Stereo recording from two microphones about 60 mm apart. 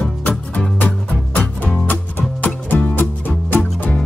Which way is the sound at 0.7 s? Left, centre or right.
Left.